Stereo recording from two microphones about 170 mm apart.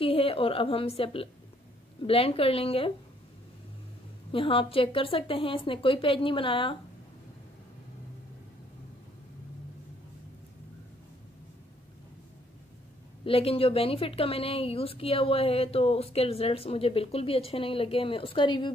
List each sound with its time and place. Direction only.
0.0 s a woman's voice: 35° left (ahead or behind)
4.3 s a woman's voice: 30° left (ahead or behind)
13.2 s a woman's voice: 35° left (ahead or behind)